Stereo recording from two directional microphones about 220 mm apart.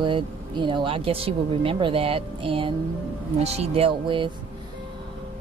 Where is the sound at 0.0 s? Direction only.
20° right (ahead or behind).